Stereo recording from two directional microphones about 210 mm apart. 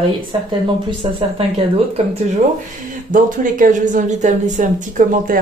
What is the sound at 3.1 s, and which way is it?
Speech, 40° right (ahead or behind).